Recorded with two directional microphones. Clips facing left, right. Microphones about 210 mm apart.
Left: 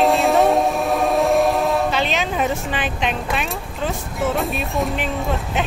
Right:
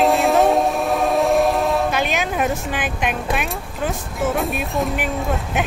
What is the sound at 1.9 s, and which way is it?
Speech, 10° right (ahead or behind).